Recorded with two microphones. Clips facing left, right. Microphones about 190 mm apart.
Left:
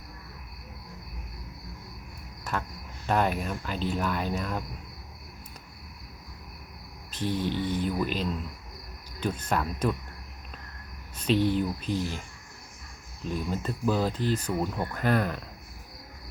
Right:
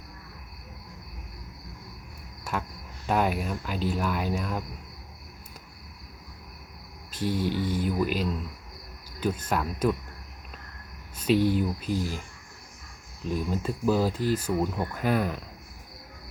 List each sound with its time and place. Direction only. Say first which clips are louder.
2.4 s speech: even; 10° right (ahead or behind)
7.1 s speech: right 1 dB; 10° right (ahead or behind)
11.2 s speech: right 2 dB; 10° right (ahead or behind)
13.5 s speech: right 2 dB; 10° right (ahead or behind)